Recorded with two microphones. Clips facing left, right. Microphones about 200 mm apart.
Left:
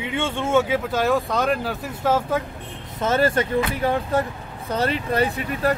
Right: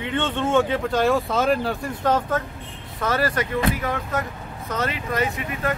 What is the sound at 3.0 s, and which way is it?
Speech, 25° left (ahead or behind).